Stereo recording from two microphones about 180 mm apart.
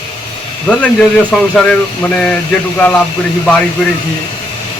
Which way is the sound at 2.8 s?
5° left (ahead or behind).